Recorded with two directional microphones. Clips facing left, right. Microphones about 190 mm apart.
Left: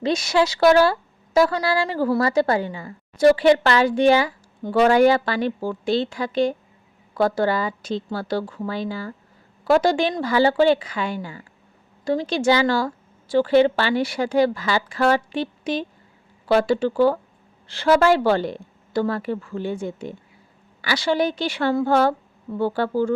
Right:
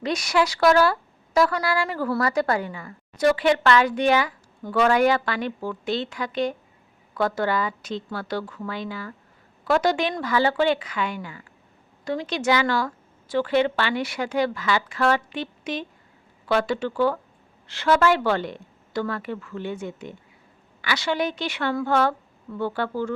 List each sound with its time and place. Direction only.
0.0 s speech: 25° left (ahead or behind)